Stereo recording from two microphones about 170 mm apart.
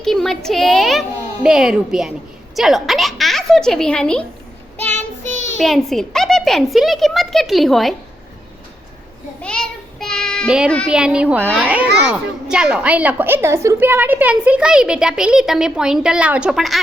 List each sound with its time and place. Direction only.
0.0 s a child's voice: centre (ahead or behind)
4.8 s child singing: 10° left (ahead or behind)
5.5 s a child's voice: centre (ahead or behind)
9.4 s child singing: 5° left (ahead or behind)
10.8 s a child's voice: 5° right (ahead or behind)